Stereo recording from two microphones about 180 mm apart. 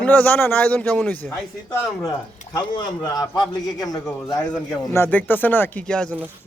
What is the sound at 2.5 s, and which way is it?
A man's voice, 20° left (ahead or behind).